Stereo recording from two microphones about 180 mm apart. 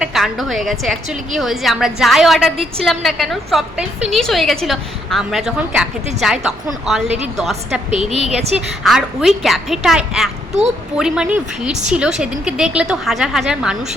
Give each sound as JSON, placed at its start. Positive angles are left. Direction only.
{"t": 0.0, "sound": "a woman's voice", "side_deg": 0}
{"t": 8.1, "sound": "a woman's voice", "side_deg": -35}
{"t": 8.5, "sound": "a woman's voice", "side_deg": -5}